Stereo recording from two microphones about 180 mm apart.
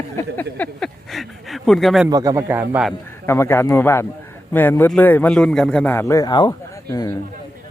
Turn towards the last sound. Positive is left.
turn(degrees=20)  # may be behind; listen again after turning